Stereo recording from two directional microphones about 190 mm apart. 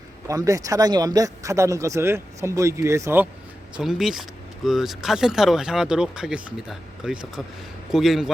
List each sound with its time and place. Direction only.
0.3 s speech: 15° right (ahead or behind)
3.8 s speech: 5° right (ahead or behind)